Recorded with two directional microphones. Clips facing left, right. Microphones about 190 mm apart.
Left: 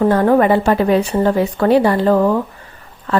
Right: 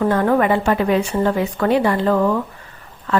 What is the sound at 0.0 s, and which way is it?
A woman's voice, 35° left (ahead or behind).